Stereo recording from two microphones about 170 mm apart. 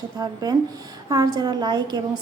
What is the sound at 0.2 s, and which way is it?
A woman's voice, 20° right (ahead or behind).